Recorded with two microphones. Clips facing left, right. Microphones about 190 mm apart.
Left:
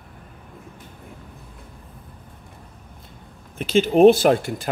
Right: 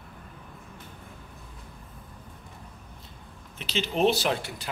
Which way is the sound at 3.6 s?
50° left (ahead or behind).